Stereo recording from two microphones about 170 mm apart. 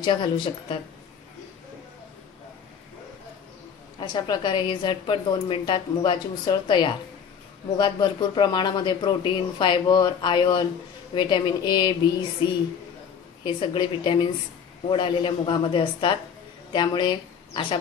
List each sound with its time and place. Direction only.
0.0 s speech: 30° left (ahead or behind)
4.0 s speech: 25° left (ahead or behind)
13.4 s speech: 30° left (ahead or behind)